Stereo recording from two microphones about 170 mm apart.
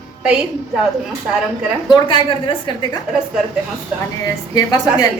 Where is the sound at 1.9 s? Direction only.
30° left (ahead or behind).